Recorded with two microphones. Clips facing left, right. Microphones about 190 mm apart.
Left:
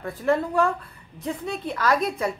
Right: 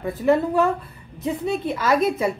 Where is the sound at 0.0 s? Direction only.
15° right (ahead or behind).